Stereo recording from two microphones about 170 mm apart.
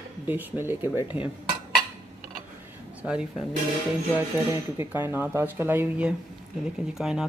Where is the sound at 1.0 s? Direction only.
30° left (ahead or behind).